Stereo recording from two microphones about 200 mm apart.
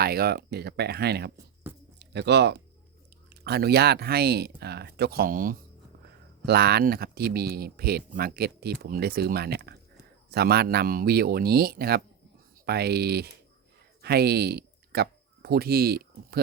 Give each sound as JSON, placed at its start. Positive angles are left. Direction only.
{"t": 0.0, "sound": "speech", "side_deg": -50}
{"t": 1.7, "sound": "a sound", "side_deg": -10}
{"t": 2.0, "sound": "speech", "side_deg": -60}